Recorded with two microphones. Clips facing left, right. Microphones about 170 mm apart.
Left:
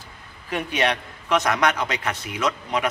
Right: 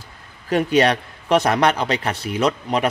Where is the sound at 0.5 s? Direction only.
35° right (ahead or behind).